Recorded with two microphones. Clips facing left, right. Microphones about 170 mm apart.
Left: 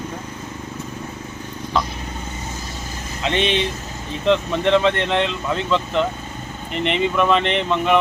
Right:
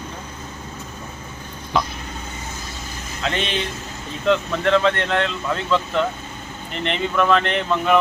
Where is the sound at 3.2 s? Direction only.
Centre (ahead or behind).